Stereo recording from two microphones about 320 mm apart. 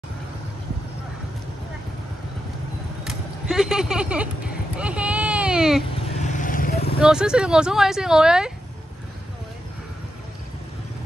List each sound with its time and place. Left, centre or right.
3.0 s vehicle: centre
4.7 s a sound: centre
6.2 s vehicle: left
7.0 s speech: centre